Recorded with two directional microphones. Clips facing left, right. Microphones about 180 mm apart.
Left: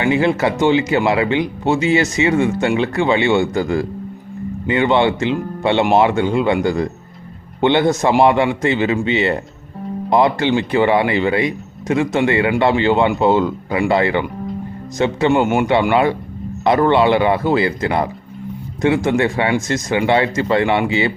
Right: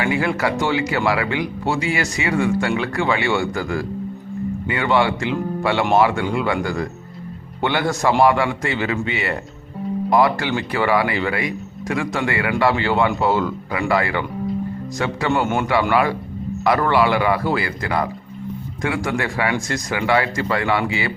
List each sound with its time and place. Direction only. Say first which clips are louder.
0.0 s speech: left 5 dB; 25° left (ahead or behind)